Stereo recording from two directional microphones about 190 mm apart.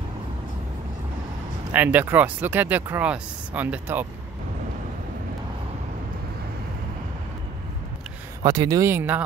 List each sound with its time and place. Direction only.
1.7 s speech: 10° right (ahead or behind)
8.4 s speech: 20° right (ahead or behind)